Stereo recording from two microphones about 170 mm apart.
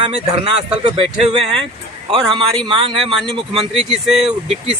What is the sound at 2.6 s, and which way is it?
Speech, 30° right (ahead or behind).